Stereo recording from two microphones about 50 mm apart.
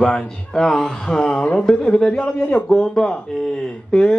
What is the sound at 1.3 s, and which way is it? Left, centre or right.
A man's voice, left.